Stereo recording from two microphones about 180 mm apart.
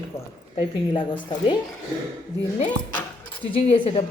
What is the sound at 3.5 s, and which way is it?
Speech, 30° left (ahead or behind).